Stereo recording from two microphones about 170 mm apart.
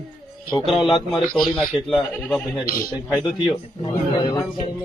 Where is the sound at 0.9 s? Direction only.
30° left (ahead or behind).